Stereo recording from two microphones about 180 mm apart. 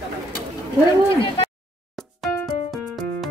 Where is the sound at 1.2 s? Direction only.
30° left (ahead or behind).